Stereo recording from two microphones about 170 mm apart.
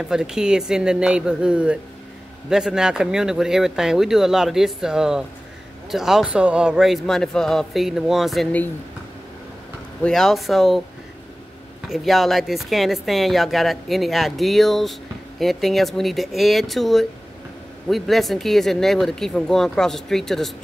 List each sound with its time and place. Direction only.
0.0 s speech: 5° right (ahead or behind)
10.0 s speech: centre (ahead or behind)
11.9 s speech: centre (ahead or behind)